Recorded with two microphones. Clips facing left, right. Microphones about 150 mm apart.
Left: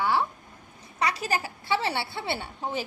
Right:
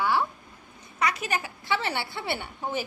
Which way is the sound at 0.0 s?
25° left (ahead or behind).